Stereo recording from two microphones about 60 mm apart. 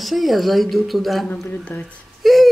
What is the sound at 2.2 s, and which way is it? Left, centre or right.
Whimper, centre.